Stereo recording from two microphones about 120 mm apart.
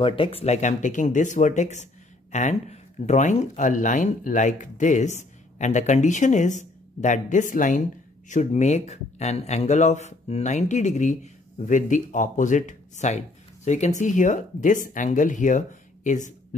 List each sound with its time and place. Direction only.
0.0 s speech: 45° left (ahead or behind); by 7.8 s 90° left
8.3 s speech: 75° left (ahead or behind)